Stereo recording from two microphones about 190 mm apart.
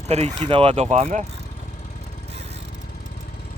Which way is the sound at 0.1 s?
35° right (ahead or behind).